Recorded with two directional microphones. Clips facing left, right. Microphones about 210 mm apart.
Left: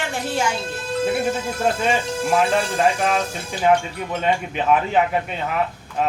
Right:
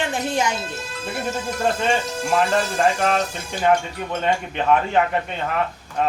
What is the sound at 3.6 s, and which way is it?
Speech, 5° left (ahead or behind).